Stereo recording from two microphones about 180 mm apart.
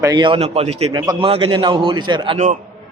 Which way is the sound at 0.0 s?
20° right (ahead or behind).